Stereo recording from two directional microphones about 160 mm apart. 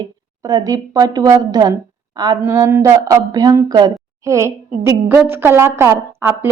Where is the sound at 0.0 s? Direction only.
20° right (ahead or behind).